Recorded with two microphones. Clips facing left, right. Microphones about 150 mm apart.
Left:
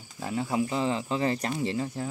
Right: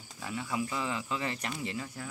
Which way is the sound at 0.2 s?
35° left (ahead or behind).